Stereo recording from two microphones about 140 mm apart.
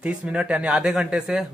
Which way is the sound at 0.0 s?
10° right (ahead or behind).